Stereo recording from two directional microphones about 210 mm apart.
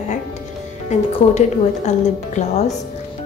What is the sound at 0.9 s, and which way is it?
Speech, 35° left (ahead or behind).